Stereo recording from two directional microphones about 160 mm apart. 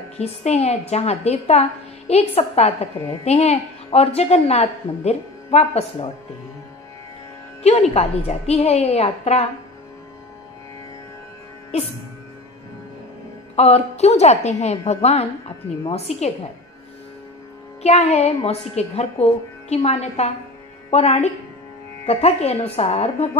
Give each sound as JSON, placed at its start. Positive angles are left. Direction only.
{"t": 0.2, "sound": "a woman's voice", "side_deg": 40}
{"t": 7.9, "sound": "a woman's voice", "side_deg": 40}
{"t": 13.6, "sound": "a woman's voice", "side_deg": 40}
{"t": 17.8, "sound": "a woman's voice", "side_deg": 40}